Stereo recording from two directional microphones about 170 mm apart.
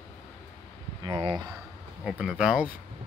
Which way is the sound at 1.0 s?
25° right (ahead or behind).